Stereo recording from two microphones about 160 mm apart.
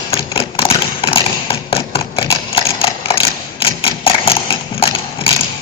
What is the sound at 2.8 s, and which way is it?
Mechanisms, 35° left (ahead or behind).